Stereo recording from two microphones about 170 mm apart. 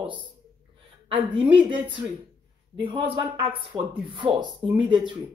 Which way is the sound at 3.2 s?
30° right (ahead or behind).